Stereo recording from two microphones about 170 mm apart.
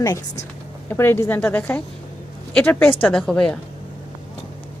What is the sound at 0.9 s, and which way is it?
A woman's voice, 15° left (ahead or behind).